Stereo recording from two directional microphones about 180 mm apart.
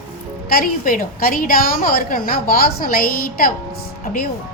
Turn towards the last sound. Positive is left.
turn(degrees=50)  # may be behind; listen again after turning